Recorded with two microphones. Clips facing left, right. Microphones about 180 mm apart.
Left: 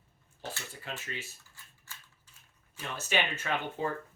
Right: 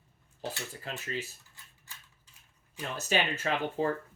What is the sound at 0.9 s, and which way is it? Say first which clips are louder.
Speech: right 1 dB; 35° right (ahead or behind).